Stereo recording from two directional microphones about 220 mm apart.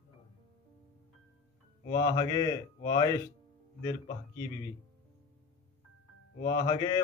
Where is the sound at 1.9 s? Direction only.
15° left (ahead or behind).